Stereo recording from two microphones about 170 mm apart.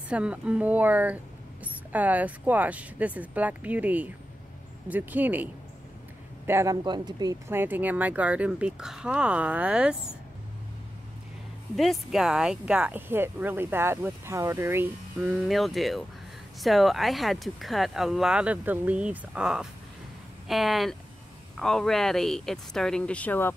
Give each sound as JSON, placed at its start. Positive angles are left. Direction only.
{"t": 0.1, "sound": "speech", "side_deg": -5}
{"t": 11.7, "sound": "speech", "side_deg": 0}